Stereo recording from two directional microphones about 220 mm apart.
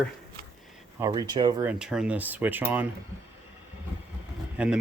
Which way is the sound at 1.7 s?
5° right (ahead or behind).